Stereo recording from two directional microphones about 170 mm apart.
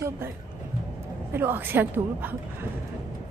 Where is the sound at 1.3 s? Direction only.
10° right (ahead or behind).